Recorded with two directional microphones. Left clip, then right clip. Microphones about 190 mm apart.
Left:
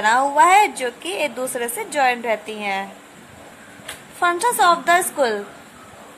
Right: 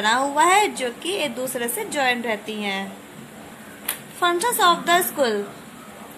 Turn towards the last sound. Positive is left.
turn(degrees=20)  # may be behind; listen again after turning